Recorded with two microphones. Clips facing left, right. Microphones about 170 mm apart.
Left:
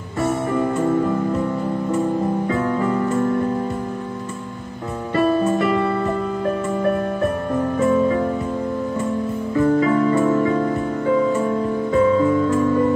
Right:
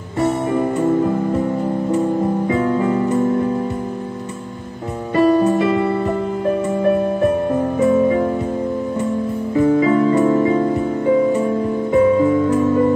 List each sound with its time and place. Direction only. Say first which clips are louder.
0.5 s music: right 2 dB; 20° right (ahead or behind)
2.4 s music: right 3 dB; 20° right (ahead or behind)
5.1 s music: right 4 dB; 20° right (ahead or behind)
7.8 s music: right 3 dB; 20° right (ahead or behind)
9.6 s music: right 3 dB; 20° right (ahead or behind)